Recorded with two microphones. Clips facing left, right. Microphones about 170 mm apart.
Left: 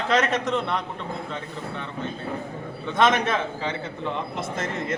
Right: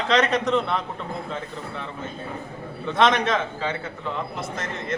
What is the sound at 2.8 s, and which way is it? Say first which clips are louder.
Speech: right 1 dB; centre (ahead or behind).